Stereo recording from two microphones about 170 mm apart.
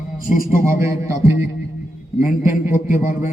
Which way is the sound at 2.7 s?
50° left (ahead or behind).